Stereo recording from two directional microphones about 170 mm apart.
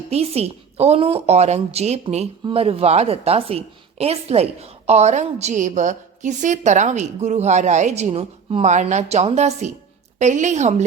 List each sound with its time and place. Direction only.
0.1 s a woman's voice: 35° right (ahead or behind)